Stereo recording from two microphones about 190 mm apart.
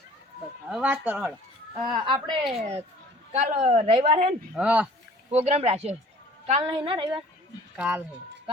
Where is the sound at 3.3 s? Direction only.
30° right (ahead or behind).